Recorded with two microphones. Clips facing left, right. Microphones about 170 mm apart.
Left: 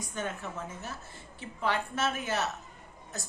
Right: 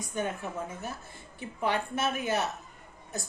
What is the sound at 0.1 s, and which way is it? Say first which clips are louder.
Speech: right 4 dB; 15° right (ahead or behind).